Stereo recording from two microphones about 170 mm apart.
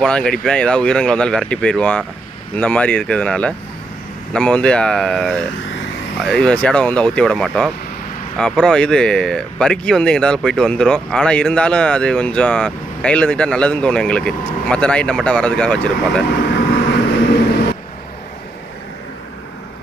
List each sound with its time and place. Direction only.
0.0 s speech: 5° left (ahead or behind)
16.3 s vehicle: 90° left